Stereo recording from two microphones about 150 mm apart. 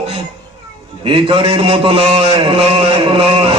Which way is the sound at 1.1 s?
35° right (ahead or behind).